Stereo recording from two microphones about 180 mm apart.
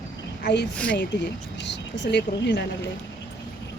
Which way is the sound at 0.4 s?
70° left (ahead or behind).